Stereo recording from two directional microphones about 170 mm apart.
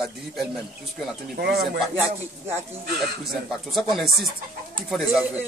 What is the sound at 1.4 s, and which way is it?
Speech, 65° right (ahead or behind).